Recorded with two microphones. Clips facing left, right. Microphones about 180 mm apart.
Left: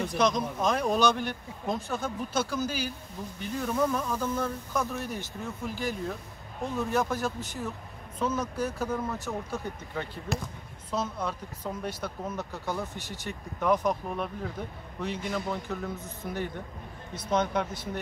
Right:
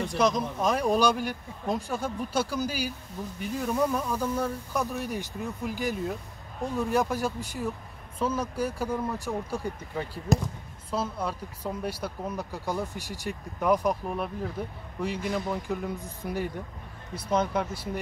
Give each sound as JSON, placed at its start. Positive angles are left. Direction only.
{"t": 0.0, "sound": "speech", "side_deg": -5}
{"t": 10.3, "sound": "speech", "side_deg": -45}
{"t": 10.9, "sound": "speech", "side_deg": -10}